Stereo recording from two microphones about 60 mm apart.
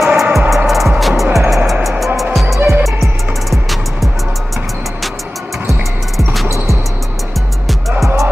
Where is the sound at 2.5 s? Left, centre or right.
Right.